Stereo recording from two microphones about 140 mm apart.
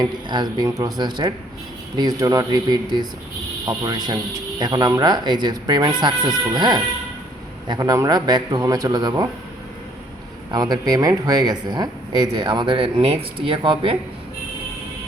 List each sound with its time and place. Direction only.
0.0 s a man's voice: 30° right (ahead or behind)
10.5 s speech: 30° right (ahead or behind)